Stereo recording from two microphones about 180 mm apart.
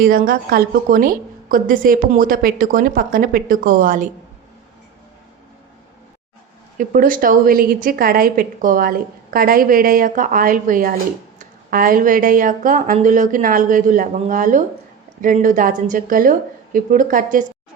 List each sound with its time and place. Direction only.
0.0 s a woman's voice: 50° right (ahead or behind)
6.7 s a woman's voice: 50° right (ahead or behind)